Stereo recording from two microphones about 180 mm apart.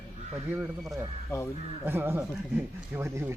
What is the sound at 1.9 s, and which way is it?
Speech, 10° right (ahead or behind).